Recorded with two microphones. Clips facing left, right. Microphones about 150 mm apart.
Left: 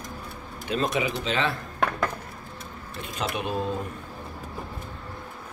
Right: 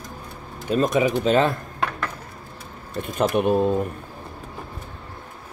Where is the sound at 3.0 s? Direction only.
50° right (ahead or behind).